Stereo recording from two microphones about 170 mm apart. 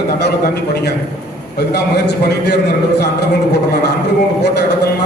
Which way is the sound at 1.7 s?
80° left.